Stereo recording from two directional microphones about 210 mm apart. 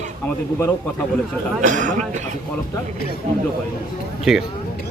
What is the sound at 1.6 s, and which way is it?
Speech, 35° right (ahead or behind).